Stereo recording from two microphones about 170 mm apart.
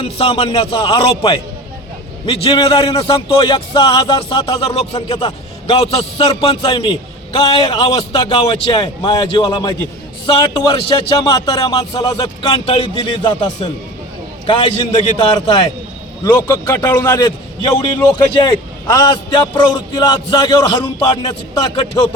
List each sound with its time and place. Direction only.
0.0 s a man's voice: 35° left (ahead or behind)
7.8 s a man's voice: 35° left (ahead or behind)
16.2 s a man's voice: 15° left (ahead or behind)